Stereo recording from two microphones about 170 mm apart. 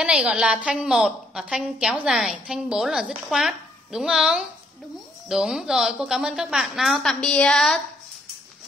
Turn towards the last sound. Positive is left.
turn(degrees=0)  # may be behind; listen again after turning